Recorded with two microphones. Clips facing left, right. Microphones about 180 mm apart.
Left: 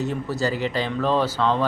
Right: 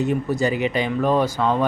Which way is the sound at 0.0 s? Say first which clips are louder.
Right 4 dB; 15° right (ahead or behind).